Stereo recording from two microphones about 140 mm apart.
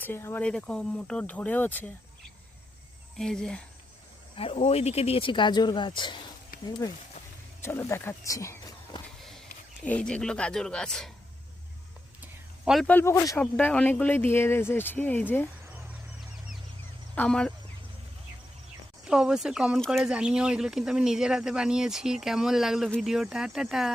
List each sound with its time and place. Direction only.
0.0 s speech: 15° left (ahead or behind)
3.2 s speech: 5° left (ahead or behind)
4.4 s a man's voice: 45° left (ahead or behind); by 9.0 s 20° left (ahead or behind)
9.8 s speech: 10° left (ahead or behind)
12.2 s a sound: 5° right (ahead or behind)
12.9 s a man's voice: 15° left (ahead or behind)
17.2 s speech: 5° left (ahead or behind)
19.0 s speech: 5° right (ahead or behind)